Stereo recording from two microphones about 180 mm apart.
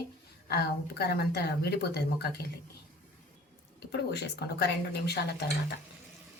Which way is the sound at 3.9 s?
65° left (ahead or behind).